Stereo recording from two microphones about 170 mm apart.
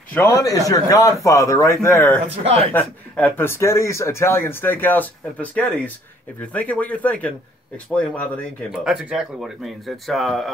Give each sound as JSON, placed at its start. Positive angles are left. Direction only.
{"t": 0.1, "sound": "a man's voice", "side_deg": 15}
{"t": 2.2, "sound": "speech", "side_deg": -35}
{"t": 2.7, "sound": "speech", "side_deg": 10}
{"t": 8.8, "sound": "speech", "side_deg": -5}